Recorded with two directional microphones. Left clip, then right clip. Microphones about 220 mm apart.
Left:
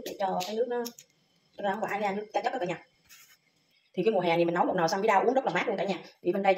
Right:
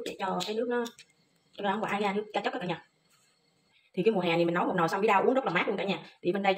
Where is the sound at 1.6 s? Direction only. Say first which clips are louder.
Even; 20° right (ahead or behind).